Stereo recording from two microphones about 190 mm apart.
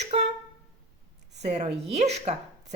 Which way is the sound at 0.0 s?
35° right (ahead or behind).